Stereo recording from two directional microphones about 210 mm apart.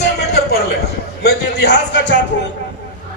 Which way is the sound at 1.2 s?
55° left (ahead or behind).